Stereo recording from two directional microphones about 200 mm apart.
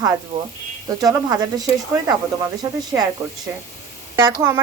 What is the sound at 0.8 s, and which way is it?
Speech, 20° right (ahead or behind).